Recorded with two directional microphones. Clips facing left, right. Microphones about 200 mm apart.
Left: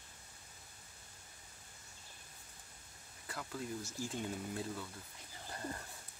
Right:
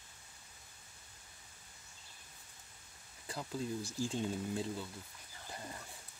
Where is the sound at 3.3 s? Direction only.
25° right (ahead or behind).